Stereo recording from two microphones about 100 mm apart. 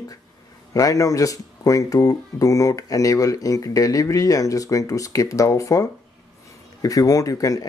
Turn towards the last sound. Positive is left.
turn(degrees=35)  # may be behind; listen again after turning